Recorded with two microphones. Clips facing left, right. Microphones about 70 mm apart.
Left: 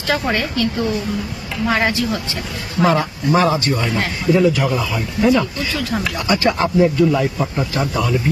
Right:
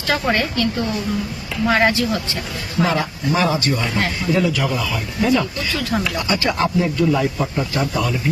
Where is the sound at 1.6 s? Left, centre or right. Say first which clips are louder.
Right 2 dB; centre.